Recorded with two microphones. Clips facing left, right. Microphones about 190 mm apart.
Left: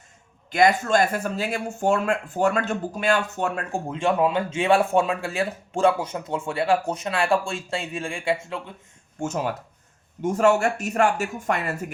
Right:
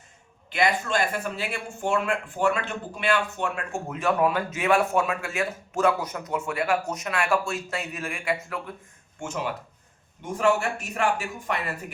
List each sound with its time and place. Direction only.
0.5 s speech: 45° left (ahead or behind); by 8.7 s 25° left (ahead or behind)
9.2 s speech: 40° left (ahead or behind)